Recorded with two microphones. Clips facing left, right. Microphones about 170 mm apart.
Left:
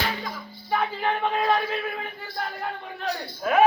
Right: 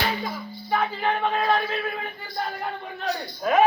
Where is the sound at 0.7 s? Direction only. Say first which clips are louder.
Right 1 dB; 5° left (ahead or behind).